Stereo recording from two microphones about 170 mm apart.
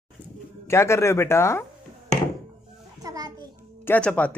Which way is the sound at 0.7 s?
15° left (ahead or behind).